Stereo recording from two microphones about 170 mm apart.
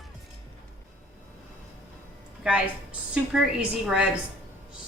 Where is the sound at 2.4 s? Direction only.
5° right (ahead or behind).